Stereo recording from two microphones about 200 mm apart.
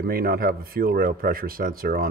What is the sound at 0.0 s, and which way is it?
Speech, 50° right (ahead or behind).